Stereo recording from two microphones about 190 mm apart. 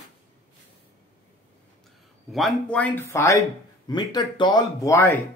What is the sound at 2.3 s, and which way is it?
Speech, centre (ahead or behind).